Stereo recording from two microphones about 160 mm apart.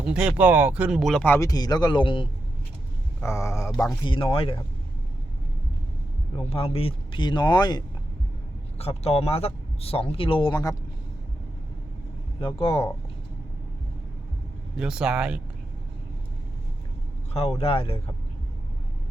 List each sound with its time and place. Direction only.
0.0 s speech: 5° right (ahead or behind)
1.4 s speech: 25° left (ahead or behind)
3.2 s speech: 15° left (ahead or behind); by 4.6 s 35° left (ahead or behind)
6.5 s speech: 40° left (ahead or behind)
8.8 s speech: 40° left (ahead or behind)
12.4 s speech: 30° left (ahead or behind)
14.8 s speech: 5° right (ahead or behind)
17.3 s speech: 40° left (ahead or behind)